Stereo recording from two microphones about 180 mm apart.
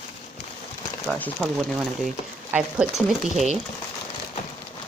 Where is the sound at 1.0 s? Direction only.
5° left (ahead or behind).